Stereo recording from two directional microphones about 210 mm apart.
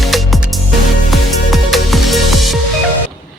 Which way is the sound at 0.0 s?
Centre (ahead or behind).